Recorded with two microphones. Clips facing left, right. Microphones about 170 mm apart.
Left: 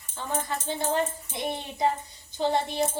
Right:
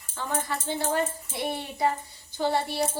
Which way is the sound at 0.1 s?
20° left (ahead or behind).